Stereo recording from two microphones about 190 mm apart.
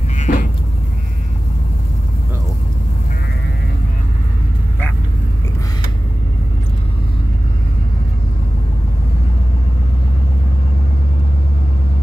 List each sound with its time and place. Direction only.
0.2 s vehicle: 40° left (ahead or behind)